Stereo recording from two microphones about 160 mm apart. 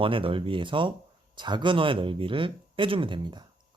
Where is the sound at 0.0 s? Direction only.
35° right (ahead or behind).